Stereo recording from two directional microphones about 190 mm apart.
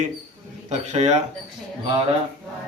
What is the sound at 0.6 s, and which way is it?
Speech, 35° right (ahead or behind).